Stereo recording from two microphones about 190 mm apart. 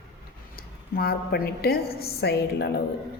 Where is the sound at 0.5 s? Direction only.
55° left (ahead or behind).